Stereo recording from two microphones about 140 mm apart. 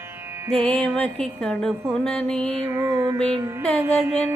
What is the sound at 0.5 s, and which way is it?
Music, 45° right (ahead or behind).